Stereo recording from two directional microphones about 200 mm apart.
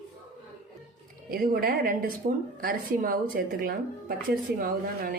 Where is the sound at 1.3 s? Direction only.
50° right (ahead or behind).